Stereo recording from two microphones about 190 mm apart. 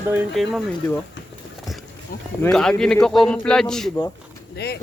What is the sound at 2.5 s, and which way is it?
A man's voice, 5° left (ahead or behind).